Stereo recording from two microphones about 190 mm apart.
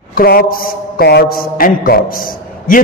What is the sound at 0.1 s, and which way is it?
A man's voice, 50° left (ahead or behind).